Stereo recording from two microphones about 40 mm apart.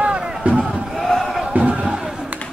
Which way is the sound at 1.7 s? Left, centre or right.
Centre.